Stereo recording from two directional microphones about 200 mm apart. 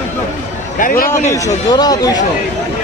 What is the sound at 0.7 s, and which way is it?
Speech, 45° left (ahead or behind).